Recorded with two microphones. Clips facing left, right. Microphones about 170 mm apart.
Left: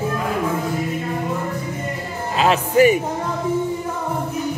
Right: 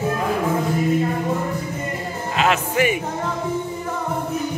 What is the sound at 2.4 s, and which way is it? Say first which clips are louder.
Speech: left 5 dB; 35° left (ahead or behind).